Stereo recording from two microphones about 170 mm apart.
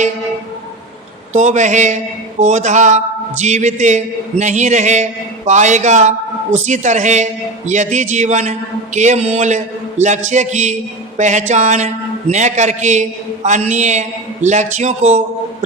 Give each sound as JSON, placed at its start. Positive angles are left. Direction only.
{"t": 1.3, "sound": "a man's voice", "side_deg": -45}